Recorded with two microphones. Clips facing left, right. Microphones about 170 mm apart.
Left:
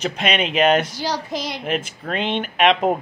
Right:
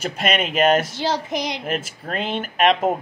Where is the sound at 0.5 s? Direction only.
45° right (ahead or behind).